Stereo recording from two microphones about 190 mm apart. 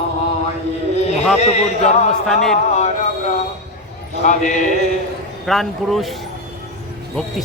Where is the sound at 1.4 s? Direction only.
35° left (ahead or behind).